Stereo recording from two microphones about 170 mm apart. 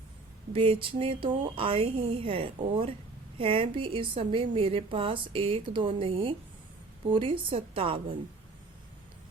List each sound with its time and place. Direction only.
0.5 s a woman's voice: 30° right (ahead or behind)